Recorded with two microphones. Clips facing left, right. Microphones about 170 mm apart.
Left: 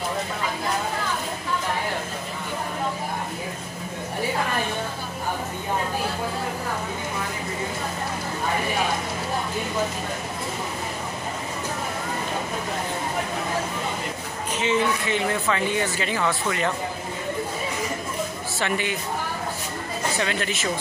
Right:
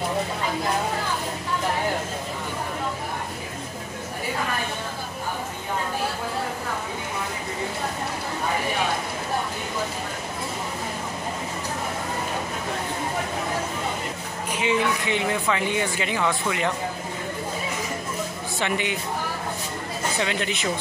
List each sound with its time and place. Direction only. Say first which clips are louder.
14.5 s speech: left 1 dB; 15° right (ahead or behind)
18.6 s speech: even; 20° right (ahead or behind)
20.2 s speech: right 2 dB; 20° right (ahead or behind)